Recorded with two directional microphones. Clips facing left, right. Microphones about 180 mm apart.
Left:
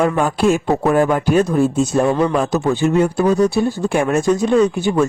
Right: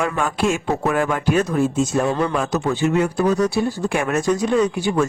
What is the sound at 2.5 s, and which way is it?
Speech, 30° left (ahead or behind).